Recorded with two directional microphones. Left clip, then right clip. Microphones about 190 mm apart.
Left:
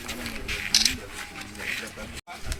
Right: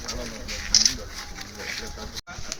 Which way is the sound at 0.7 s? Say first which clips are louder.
Right 2 dB; 30° right (ahead or behind).